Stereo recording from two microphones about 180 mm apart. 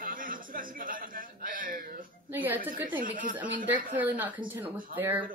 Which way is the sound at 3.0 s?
50° right (ahead or behind).